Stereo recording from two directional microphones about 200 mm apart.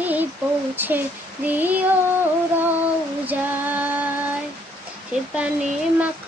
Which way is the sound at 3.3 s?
10° right (ahead or behind).